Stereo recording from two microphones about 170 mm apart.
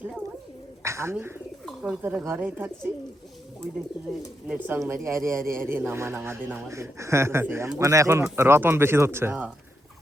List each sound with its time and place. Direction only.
0.8 s speech: 15° right (ahead or behind)
1.6 s bird: 5° right (ahead or behind)
2.0 s speech: 10° right (ahead or behind)
4.4 s speech: 10° right (ahead or behind)